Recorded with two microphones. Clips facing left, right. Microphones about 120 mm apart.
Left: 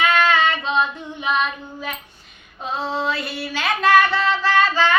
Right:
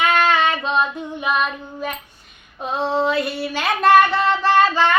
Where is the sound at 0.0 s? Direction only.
10° right (ahead or behind).